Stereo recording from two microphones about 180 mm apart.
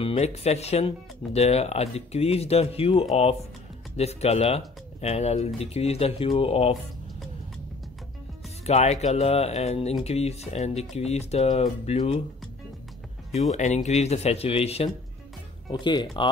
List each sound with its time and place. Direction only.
0.0 s speech: 35° left (ahead or behind)
8.6 s speech: 40° left (ahead or behind)
13.5 s speech: 40° left (ahead or behind); by 16.3 s 25° left (ahead or behind)